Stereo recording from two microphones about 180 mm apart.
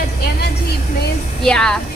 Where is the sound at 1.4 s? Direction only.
5° left (ahead or behind).